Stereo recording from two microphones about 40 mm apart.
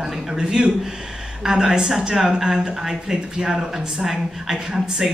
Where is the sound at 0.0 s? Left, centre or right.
Centre.